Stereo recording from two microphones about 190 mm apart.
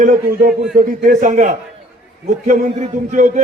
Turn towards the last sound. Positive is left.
turn(degrees=-40)  # may be behind; listen again after turning